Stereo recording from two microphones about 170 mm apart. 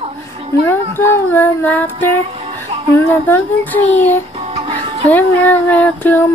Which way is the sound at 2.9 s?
10° left (ahead or behind).